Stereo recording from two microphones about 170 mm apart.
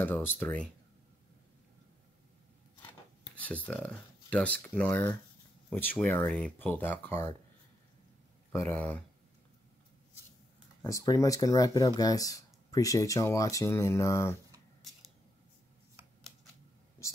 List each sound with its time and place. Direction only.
0.0 s speech: 10° left (ahead or behind)
2.9 s speech: 10° left (ahead or behind)
8.5 s speech: 10° left (ahead or behind)
10.8 s speech: 20° left (ahead or behind)